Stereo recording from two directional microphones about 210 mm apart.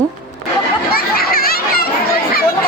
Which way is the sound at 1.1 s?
45° left (ahead or behind).